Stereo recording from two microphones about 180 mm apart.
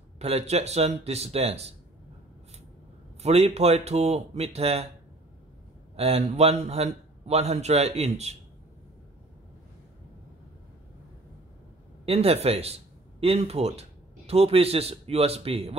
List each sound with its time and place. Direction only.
0.2 s a man's voice: 35° right (ahead or behind)
3.2 s a man's voice: 35° right (ahead or behind)
5.9 s a man's voice: 35° right (ahead or behind)
12.1 s speech: 35° right (ahead or behind)